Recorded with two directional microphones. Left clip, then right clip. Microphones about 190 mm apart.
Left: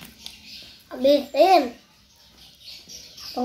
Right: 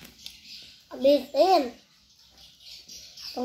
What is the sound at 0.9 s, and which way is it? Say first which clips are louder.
Speech: left 3 dB; 10° right (ahead or behind).